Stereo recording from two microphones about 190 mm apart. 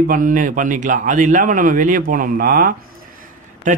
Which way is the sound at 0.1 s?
45° right (ahead or behind).